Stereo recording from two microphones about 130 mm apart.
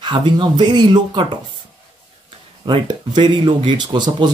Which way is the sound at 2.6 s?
35° right (ahead or behind).